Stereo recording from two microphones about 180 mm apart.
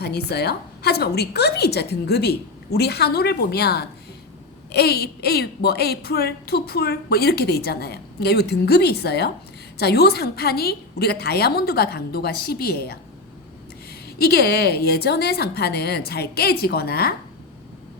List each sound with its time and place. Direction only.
0.0 s speech: 65° left (ahead or behind)
14.2 s speech: 60° left (ahead or behind)